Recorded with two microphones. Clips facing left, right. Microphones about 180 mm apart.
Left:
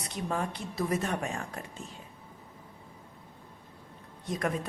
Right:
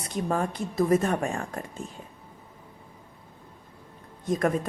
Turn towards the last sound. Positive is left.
turn(degrees=-50)  # may be behind; listen again after turning